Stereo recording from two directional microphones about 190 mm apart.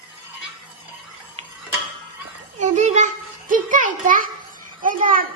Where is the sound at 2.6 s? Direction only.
40° right (ahead or behind).